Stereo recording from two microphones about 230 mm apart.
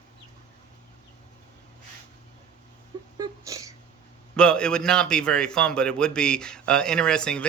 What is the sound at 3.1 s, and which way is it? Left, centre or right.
Whimper, centre.